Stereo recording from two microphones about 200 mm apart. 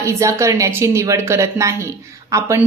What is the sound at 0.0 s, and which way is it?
A woman's voice, 15° right (ahead or behind).